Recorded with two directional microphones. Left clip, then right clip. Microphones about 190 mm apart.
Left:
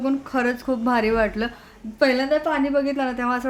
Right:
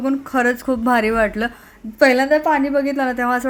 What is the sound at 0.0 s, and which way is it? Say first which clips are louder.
A woman's voice: right 5 dB; 15° right (ahead or behind).